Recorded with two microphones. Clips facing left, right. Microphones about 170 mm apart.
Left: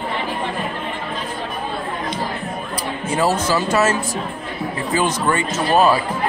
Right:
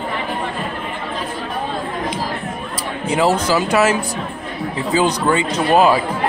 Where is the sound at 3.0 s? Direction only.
15° right (ahead or behind).